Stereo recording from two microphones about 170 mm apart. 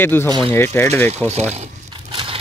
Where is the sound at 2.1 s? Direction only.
30° right (ahead or behind).